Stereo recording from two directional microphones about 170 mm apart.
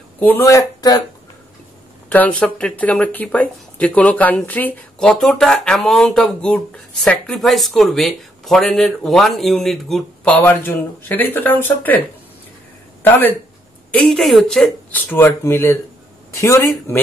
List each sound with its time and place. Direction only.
0.2 s speech: 15° left (ahead or behind)
2.0 s speech: 10° left (ahead or behind)
13.9 s speech: 5° left (ahead or behind)